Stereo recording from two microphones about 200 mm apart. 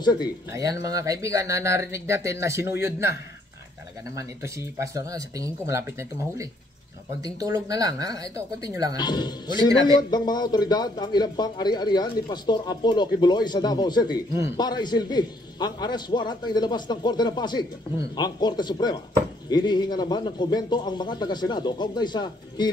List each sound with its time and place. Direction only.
0.0 s speech: 20° left (ahead or behind)
0.5 s speech: 15° right (ahead or behind)
9.0 s speech: 20° left (ahead or behind)